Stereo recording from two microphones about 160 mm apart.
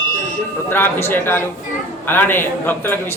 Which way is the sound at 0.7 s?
15° left (ahead or behind).